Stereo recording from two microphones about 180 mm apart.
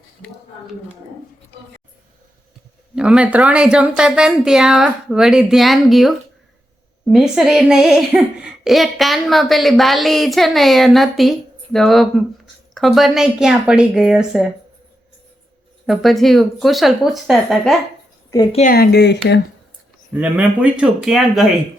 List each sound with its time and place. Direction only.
2.9 s speech: 5° right (ahead or behind)
15.9 s speech: centre (ahead or behind)
18.7 s speech: 60° left (ahead or behind)
20.1 s speech: 10° right (ahead or behind)